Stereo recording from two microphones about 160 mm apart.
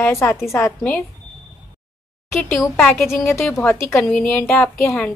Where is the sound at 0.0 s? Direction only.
15° left (ahead or behind).